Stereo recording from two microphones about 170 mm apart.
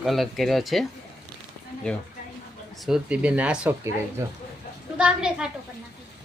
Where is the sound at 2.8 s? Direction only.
5° right (ahead or behind).